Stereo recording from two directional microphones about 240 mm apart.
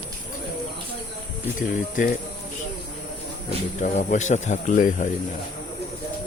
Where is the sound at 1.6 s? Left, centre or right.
Left.